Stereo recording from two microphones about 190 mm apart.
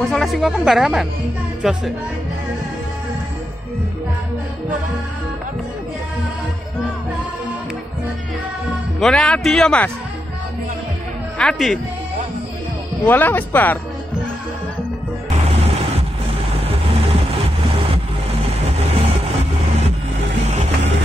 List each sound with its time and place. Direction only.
0.0 s speech: centre (ahead or behind)
9.0 s speech: 5° left (ahead or behind)
11.3 s speech: centre (ahead or behind)
13.0 s speech: 10° left (ahead or behind)
15.4 s music: 35° right (ahead or behind)